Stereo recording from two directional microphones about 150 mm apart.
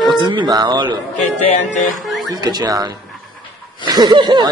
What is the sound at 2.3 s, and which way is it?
Speech, 25° right (ahead or behind).